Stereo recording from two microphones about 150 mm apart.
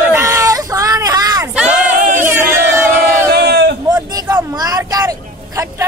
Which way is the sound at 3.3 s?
90° right.